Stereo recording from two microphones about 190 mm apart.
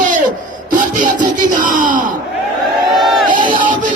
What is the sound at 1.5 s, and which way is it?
Speech, 45° right (ahead or behind).